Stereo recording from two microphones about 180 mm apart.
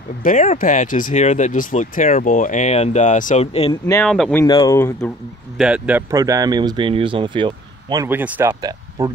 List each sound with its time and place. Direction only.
0.2 s speech: 45° left (ahead or behind)
3.8 s speech: 10° left (ahead or behind)
4.1 s speech: centre (ahead or behind)
4.5 s speech: 25° left (ahead or behind)
4.7 s speech: 15° left (ahead or behind)
5.6 s speech: 5° right (ahead or behind); by 8.1 s 25° right (ahead or behind)
8.1 s speech: 10° right (ahead or behind)